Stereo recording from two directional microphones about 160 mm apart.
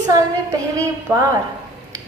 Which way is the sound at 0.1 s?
20° right (ahead or behind).